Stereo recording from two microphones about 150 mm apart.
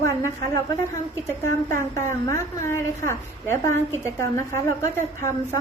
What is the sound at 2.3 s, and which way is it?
A woman's voice, 15° left (ahead or behind).